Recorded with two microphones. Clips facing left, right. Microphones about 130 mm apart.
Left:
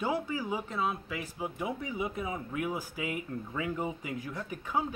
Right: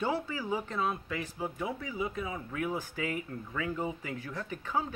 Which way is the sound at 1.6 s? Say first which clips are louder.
Left 1 dB; 20° left (ahead or behind).